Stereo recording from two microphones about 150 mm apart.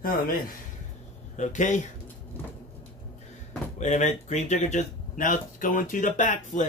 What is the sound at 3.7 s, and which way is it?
Speech, 50° left (ahead or behind).